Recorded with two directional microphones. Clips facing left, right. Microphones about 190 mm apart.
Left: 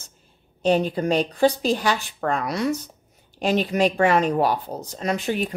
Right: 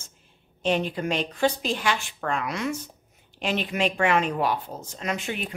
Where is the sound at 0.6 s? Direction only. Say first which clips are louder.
Left 5 dB; 40° left (ahead or behind).